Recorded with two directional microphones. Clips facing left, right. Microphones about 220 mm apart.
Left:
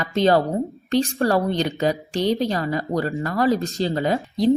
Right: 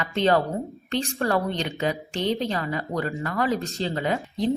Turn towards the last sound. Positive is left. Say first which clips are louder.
# left 4 dB
turn(degrees=35)  # may be behind; listen again after turning